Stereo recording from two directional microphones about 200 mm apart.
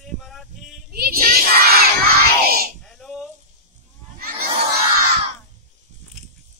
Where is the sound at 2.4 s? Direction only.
50° right (ahead or behind).